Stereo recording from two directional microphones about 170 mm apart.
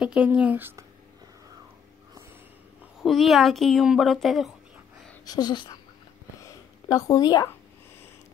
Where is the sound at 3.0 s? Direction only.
Centre (ahead or behind).